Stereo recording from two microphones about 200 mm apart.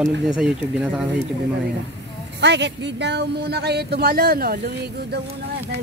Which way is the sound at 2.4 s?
60° right (ahead or behind).